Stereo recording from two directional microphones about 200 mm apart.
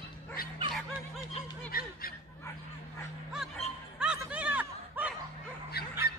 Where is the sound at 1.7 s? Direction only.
50° left (ahead or behind).